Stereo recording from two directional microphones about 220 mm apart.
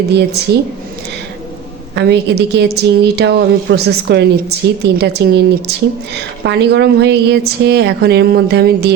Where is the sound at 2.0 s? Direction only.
50° right (ahead or behind).